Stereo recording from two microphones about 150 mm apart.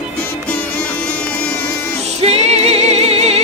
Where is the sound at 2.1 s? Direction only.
45° right (ahead or behind).